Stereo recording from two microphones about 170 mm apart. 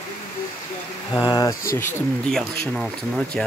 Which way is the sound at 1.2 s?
20° left (ahead or behind).